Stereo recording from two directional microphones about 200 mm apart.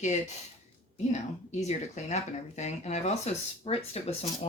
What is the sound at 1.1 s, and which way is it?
Speech, 35° left (ahead or behind).